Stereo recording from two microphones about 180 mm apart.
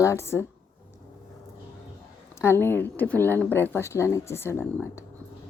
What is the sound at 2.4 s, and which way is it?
A woman's voice, 10° left (ahead or behind).